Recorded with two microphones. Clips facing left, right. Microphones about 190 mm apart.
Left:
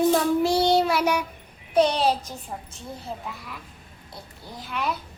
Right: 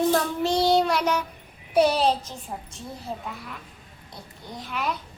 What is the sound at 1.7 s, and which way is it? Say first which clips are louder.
Speech: even; 5° right (ahead or behind).